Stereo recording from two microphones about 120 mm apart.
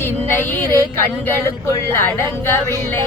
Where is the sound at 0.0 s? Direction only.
15° left (ahead or behind).